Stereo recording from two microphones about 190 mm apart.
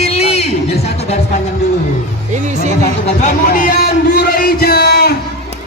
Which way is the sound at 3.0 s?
45° left (ahead or behind).